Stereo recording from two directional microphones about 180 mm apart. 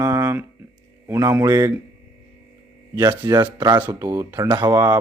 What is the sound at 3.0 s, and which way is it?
A man's voice, 15° right (ahead or behind).